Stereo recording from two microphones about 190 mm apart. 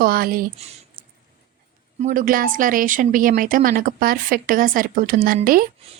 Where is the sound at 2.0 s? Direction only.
45° right (ahead or behind).